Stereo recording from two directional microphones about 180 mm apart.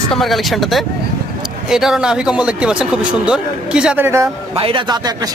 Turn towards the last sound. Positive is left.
turn(degrees=-25)  # may be behind; listen again after turning